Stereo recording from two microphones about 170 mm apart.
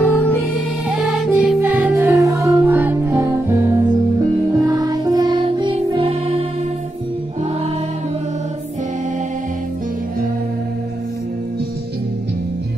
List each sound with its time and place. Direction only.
0.0 s music: 10° left (ahead or behind)
0.8 s music: centre (ahead or behind); by 6.3 s 35° right (ahead or behind)